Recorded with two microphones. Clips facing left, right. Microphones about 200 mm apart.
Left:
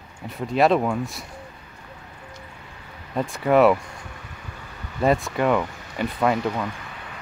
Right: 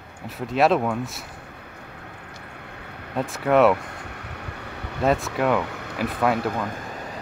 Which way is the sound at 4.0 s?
65° right (ahead or behind).